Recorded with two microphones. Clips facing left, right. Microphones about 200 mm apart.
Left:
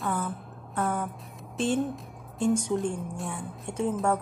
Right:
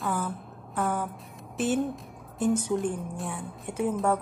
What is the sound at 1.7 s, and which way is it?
Speech, 5° right (ahead or behind).